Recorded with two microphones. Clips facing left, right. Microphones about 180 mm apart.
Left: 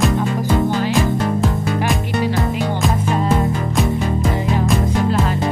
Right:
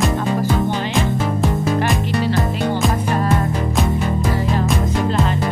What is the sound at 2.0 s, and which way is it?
Music, 15° left (ahead or behind).